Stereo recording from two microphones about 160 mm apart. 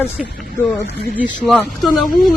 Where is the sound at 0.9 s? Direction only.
70° left (ahead or behind).